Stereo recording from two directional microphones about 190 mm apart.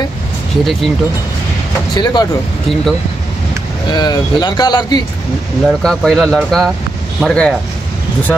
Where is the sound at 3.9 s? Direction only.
20° left (ahead or behind).